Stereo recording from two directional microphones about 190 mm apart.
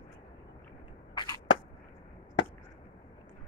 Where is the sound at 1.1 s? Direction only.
25° left (ahead or behind).